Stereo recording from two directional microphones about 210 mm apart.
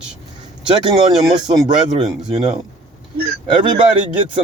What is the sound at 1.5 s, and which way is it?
Speech, 20° right (ahead or behind).